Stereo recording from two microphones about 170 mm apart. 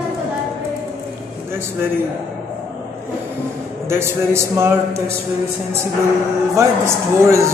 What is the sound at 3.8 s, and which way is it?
Speech, 15° right (ahead or behind).